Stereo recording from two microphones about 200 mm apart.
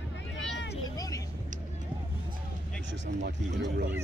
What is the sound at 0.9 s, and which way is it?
Vehicle, 20° left (ahead or behind).